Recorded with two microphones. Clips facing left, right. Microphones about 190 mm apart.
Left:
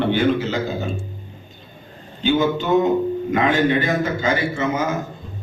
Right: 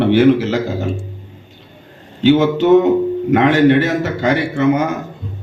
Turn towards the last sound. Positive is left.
turn(degrees=-60)  # may be behind; listen again after turning